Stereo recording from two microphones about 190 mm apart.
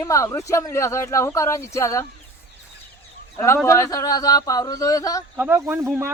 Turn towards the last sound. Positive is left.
turn(degrees=-15)  # may be behind; listen again after turning